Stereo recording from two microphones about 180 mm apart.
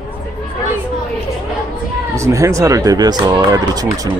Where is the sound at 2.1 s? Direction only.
15° right (ahead or behind).